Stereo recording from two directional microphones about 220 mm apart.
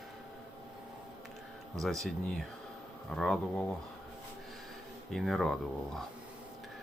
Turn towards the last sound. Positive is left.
turn(degrees=0)  # may be behind; listen again after turning